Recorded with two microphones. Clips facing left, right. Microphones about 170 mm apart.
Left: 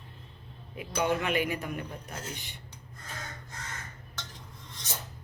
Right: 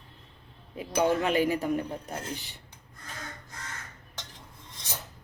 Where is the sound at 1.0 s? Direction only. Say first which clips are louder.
Right 3 dB; 35° right (ahead or behind).